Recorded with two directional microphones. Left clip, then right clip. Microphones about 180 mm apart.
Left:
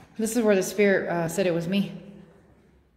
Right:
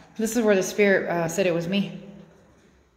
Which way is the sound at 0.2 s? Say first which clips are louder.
Right 1 dB; 5° left (ahead or behind).